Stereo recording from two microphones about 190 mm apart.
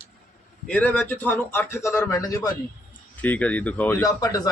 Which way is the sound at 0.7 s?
5° left (ahead or behind).